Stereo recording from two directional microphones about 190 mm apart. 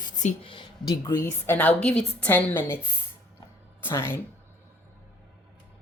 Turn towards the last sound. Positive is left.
turn(degrees=10)  # may be behind; listen again after turning